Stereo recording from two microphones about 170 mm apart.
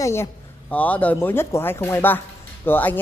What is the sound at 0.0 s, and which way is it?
A man's voice, 15° left (ahead or behind).